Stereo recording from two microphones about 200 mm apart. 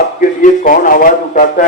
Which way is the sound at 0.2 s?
45° left (ahead or behind).